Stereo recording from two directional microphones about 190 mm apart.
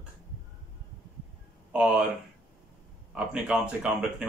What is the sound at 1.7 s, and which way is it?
Speech, 5° right (ahead or behind).